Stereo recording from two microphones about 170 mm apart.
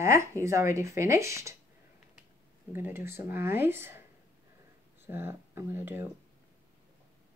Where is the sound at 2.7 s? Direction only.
15° right (ahead or behind).